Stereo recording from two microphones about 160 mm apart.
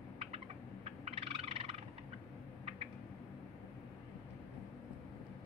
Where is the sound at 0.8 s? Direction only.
40° right (ahead or behind).